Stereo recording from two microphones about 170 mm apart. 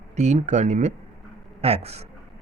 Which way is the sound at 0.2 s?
40° right (ahead or behind).